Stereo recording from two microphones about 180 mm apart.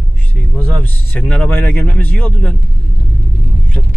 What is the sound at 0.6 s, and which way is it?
Speech, 10° left (ahead or behind).